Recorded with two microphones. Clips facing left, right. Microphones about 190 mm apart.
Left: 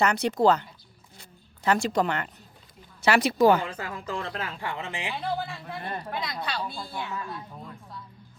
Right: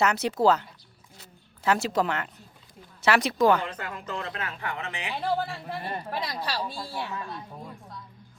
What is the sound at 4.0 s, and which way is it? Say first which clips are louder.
Speech: left 2 dB; 30° left (ahead or behind).